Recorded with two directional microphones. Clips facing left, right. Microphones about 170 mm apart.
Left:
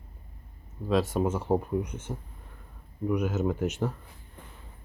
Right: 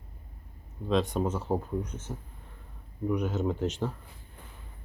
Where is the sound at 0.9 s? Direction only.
5° left (ahead or behind).